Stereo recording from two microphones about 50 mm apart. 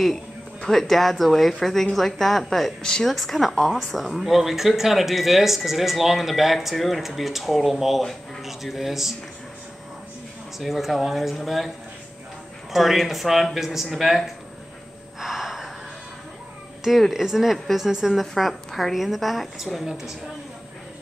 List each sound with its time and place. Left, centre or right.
0.6 s a woman's voice: centre
2.8 s speech: centre
3.1 s a woman's voice: centre
10.6 s a woman's voice: centre
12.7 s a woman's voice: centre
15.1 s gasp: centre
17.1 s a woman's voice: centre
18.2 s a woman's voice: centre